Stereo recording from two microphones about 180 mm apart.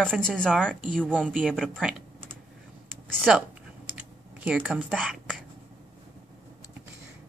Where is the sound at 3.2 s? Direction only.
5° right (ahead or behind).